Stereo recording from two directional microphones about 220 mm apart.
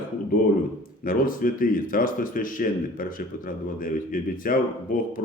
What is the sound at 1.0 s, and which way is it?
Speech, 40° left (ahead or behind).